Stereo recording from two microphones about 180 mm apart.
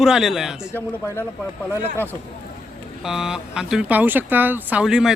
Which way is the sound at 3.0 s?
5° right (ahead or behind).